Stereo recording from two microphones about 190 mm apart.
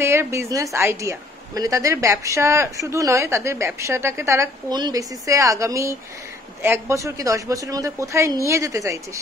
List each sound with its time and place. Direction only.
0.0 s a woman's voice: 15° right (ahead or behind)